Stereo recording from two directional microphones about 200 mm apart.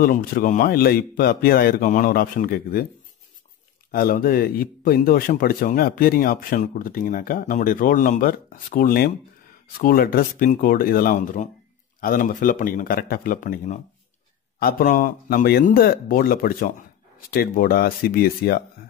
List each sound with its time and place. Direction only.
0.0 s speech: 45° left (ahead or behind)
3.9 s speech: 45° left (ahead or behind)